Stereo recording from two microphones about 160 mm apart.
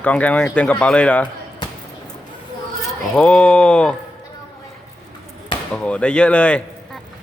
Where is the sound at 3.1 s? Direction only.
5° left (ahead or behind).